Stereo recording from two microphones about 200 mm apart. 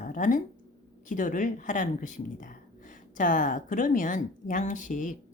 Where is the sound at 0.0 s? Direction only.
40° left (ahead or behind).